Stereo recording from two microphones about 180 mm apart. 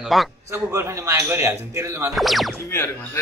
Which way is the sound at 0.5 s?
15° right (ahead or behind).